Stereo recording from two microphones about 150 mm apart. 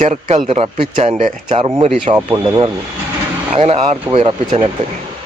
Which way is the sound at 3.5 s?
40° right (ahead or behind).